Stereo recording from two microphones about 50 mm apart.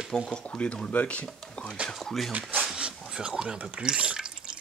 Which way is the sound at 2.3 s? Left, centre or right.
Right.